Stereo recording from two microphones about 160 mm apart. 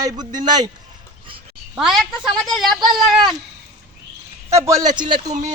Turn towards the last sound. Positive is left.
turn(degrees=-30)  # may be behind; listen again after turning